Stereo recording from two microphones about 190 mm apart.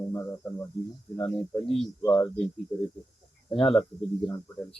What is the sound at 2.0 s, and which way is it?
Speech, 10° left (ahead or behind).